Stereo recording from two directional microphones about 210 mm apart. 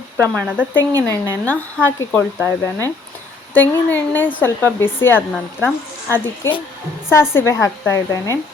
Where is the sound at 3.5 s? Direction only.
10° left (ahead or behind).